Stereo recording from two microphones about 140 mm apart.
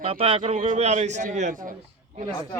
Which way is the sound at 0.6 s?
60° right (ahead or behind).